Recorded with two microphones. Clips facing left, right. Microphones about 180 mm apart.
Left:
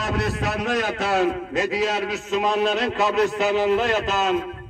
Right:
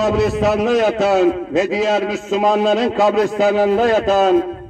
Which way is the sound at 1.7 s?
90° right.